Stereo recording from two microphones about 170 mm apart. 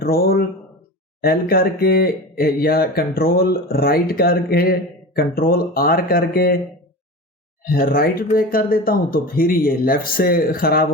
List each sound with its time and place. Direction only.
0.0 s speech: 65° left (ahead or behind)
7.6 s speech: 60° left (ahead or behind)